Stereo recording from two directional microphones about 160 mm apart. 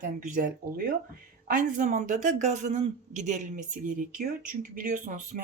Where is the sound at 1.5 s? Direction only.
55° right (ahead or behind).